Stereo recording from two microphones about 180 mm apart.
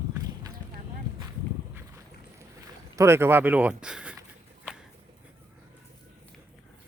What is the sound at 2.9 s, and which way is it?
Speech, 15° right (ahead or behind).